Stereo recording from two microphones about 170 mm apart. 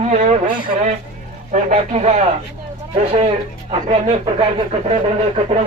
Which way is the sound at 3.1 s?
35° right (ahead or behind).